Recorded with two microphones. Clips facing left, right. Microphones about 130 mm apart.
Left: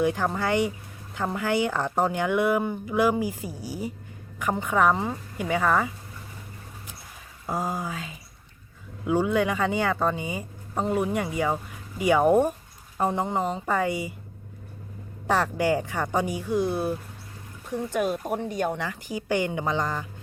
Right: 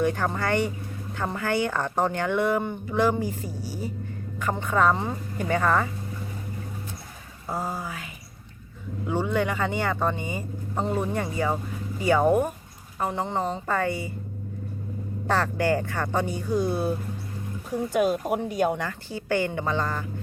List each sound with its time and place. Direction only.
0.0 s speech: 10° left (ahead or behind)
7.4 s speech: 15° left (ahead or behind)
15.3 s speech: 10° left (ahead or behind)
17.7 s speech: 5° right (ahead or behind)
18.9 s speech: 15° left (ahead or behind)